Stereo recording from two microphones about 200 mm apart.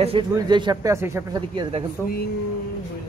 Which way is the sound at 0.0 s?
25° right (ahead or behind).